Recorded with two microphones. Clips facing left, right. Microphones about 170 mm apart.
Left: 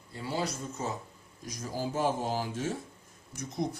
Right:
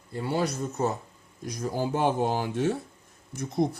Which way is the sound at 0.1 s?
60° right (ahead or behind).